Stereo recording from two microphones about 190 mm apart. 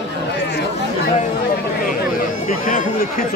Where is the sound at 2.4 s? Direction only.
45° left (ahead or behind).